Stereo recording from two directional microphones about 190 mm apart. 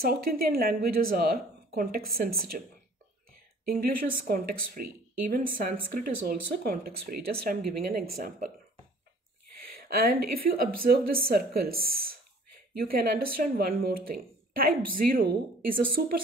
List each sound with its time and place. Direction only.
0.0 s speech: 50° right (ahead or behind)
3.6 s speech: 50° right (ahead or behind)
9.8 s speech: 55° right (ahead or behind)